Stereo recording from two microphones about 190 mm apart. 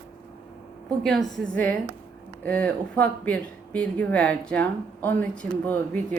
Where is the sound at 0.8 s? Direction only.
5° left (ahead or behind).